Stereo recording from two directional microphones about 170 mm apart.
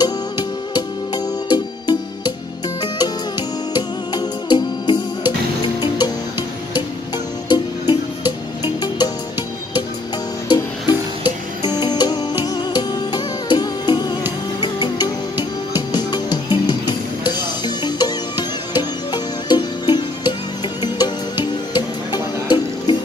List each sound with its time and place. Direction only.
0.0 s music: 25° left (ahead or behind)
3.7 s music: 25° left (ahead or behind)
7.4 s music: 25° left (ahead or behind)
10.5 s music: 25° left (ahead or behind)